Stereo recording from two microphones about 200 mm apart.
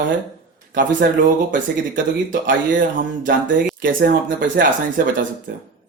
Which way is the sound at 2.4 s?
40° right (ahead or behind).